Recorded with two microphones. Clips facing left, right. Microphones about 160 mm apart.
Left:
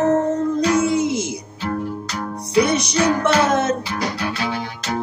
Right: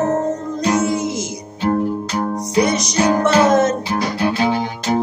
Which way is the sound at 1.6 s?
40° right (ahead or behind).